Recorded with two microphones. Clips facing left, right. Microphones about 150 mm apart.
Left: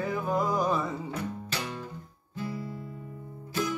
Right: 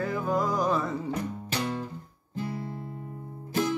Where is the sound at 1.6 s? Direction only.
50° right (ahead or behind).